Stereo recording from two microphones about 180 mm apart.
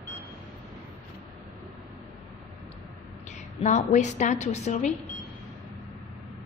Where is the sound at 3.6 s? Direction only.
40° left (ahead or behind).